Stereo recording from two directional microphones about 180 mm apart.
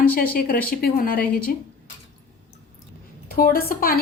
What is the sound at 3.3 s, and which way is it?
Speech, 55° left (ahead or behind).